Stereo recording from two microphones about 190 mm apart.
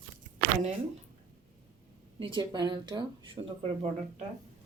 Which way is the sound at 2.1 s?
25° right (ahead or behind).